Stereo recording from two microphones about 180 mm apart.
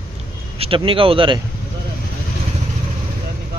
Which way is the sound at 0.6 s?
30° right (ahead or behind).